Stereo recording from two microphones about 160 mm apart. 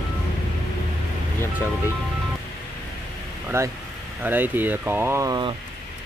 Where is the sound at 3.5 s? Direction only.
15° right (ahead or behind).